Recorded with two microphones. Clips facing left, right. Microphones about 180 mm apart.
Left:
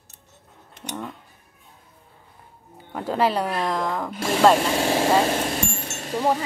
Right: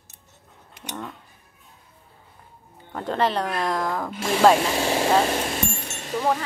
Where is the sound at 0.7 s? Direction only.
5° right (ahead or behind).